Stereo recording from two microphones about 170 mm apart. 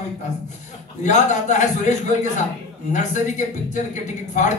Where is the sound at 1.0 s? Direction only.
45° left (ahead or behind).